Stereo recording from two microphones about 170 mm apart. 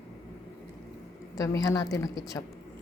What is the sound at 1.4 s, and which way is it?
A woman's voice, 20° left (ahead or behind).